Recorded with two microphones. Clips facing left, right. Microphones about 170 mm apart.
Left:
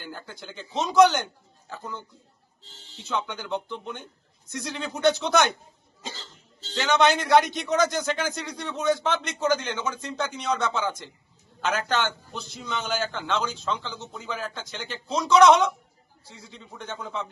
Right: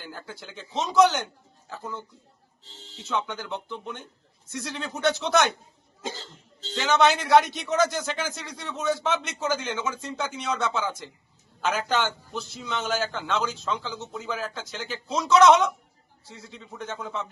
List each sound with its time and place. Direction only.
0.0 s a man's voice: centre (ahead or behind)
6.7 s a man's voice: 5° right (ahead or behind)